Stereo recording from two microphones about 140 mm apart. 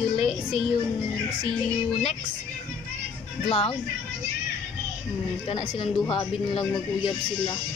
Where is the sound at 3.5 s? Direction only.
45° left (ahead or behind).